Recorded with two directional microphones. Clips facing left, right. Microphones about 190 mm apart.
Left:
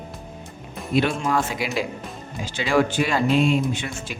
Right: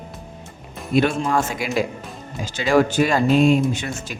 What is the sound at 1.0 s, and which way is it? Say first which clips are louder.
Speech: right 3 dB; 45° right (ahead or behind).